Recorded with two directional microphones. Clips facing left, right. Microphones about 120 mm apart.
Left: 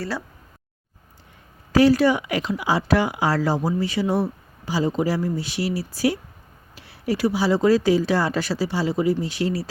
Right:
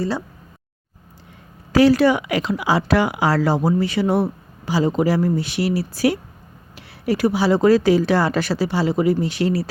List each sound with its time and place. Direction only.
1.7 s speech: 85° right; by 9.6 s 65° right (ahead or behind)